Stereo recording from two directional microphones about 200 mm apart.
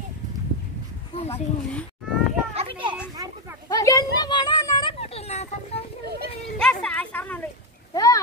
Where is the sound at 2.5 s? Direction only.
30° right (ahead or behind).